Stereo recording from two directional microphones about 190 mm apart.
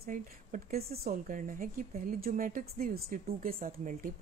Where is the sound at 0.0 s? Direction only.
45° right (ahead or behind).